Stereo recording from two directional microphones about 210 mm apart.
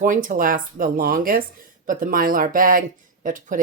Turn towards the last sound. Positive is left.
turn(degrees=-40)  # may be behind; listen again after turning